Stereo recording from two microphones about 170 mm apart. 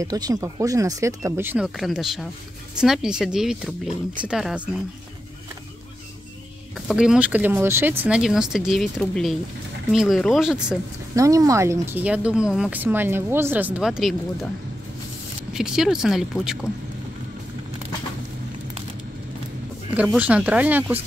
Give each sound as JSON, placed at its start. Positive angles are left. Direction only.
{"t": 0.0, "sound": "speech", "side_deg": -20}
{"t": 1.8, "sound": "speech", "side_deg": 0}
{"t": 6.9, "sound": "speech", "side_deg": -5}
{"t": 11.1, "sound": "speech", "side_deg": -20}
{"t": 15.5, "sound": "speech", "side_deg": -5}
{"t": 19.9, "sound": "speech", "side_deg": -10}